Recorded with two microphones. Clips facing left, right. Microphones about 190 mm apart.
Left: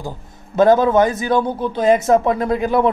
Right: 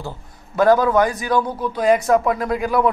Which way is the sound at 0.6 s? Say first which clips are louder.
Left 2 dB; 25° left (ahead or behind).